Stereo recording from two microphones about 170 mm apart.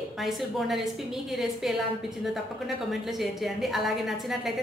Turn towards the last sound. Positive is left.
turn(degrees=0)  # may be behind; listen again after turning